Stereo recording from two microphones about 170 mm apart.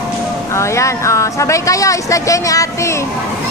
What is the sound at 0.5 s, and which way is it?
Speech, 15° left (ahead or behind).